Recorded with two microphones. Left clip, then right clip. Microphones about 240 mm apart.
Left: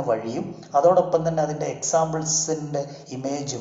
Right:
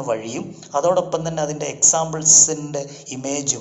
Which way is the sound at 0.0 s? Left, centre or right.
Right.